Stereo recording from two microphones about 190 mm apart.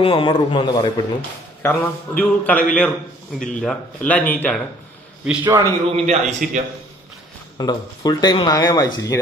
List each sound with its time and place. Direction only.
0.0 s speech: 25° left (ahead or behind)
1.6 s a man's voice: 10° left (ahead or behind)
5.2 s a man's voice: 10° right (ahead or behind)
6.0 s a man's voice: 35° right (ahead or behind)
7.5 s speech: 20° left (ahead or behind)